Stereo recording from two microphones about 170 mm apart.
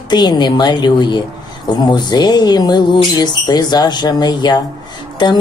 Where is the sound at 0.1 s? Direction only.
25° left (ahead or behind).